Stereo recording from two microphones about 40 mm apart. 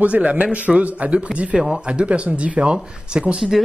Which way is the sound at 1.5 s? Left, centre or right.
Centre.